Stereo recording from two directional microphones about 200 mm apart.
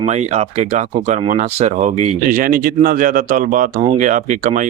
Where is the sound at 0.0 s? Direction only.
35° right (ahead or behind).